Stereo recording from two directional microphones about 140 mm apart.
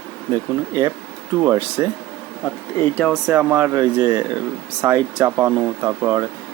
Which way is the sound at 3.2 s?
10° right (ahead or behind).